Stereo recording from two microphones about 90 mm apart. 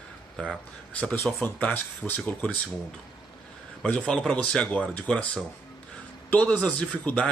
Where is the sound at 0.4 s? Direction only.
10° left (ahead or behind).